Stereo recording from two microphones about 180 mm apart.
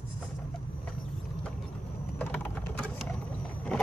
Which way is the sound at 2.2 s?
10° left (ahead or behind).